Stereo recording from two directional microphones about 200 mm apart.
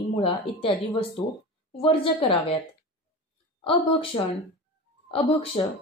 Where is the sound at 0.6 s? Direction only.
30° left (ahead or behind).